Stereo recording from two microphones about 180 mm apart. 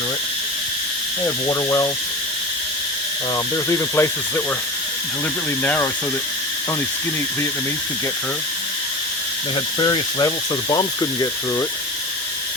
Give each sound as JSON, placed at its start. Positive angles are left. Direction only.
{"t": 1.2, "sound": "speech", "side_deg": 20}
{"t": 3.3, "sound": "speech", "side_deg": 15}
{"t": 5.6, "sound": "speech", "side_deg": 10}
{"t": 9.8, "sound": "speech", "side_deg": 20}